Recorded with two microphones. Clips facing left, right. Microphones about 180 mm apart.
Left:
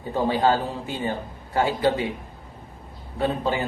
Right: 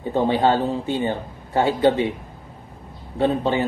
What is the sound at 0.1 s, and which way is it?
A man's voice, 25° right (ahead or behind).